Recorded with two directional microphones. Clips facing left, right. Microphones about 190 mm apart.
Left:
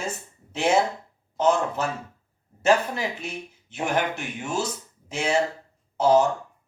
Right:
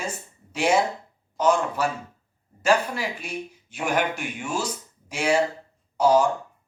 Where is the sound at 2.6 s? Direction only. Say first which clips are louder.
Left 1 dB; 20° left (ahead or behind).